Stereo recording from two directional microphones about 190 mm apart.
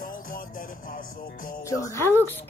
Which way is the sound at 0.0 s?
45° left (ahead or behind).